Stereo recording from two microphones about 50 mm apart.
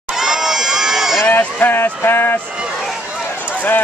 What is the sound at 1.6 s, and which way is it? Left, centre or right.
Speech, left.